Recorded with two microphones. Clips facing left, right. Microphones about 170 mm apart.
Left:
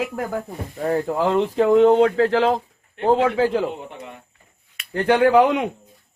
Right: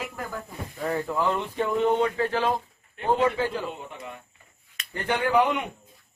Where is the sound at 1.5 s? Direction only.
90° left.